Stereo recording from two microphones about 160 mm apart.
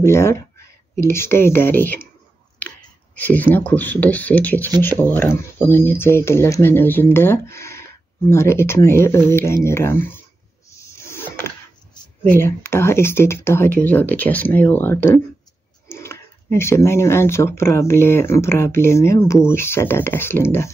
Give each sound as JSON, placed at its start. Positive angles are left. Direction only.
{"t": 0.0, "sound": "speech", "side_deg": 15}
{"t": 3.2, "sound": "speech", "side_deg": 10}
{"t": 11.1, "sound": "a sound", "side_deg": 15}
{"t": 12.3, "sound": "speech", "side_deg": 15}